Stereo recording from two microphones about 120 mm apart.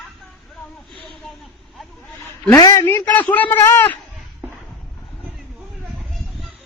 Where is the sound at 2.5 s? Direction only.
30° left (ahead or behind).